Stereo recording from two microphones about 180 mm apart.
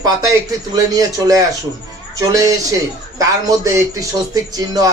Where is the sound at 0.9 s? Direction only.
20° right (ahead or behind).